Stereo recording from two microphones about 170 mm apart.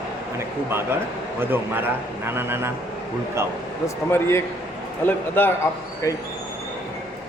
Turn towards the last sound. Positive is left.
turn(degrees=15)  # may be behind; listen again after turning